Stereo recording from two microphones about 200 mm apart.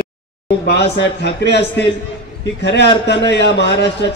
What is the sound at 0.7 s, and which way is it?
A man's voice, 55° left (ahead or behind).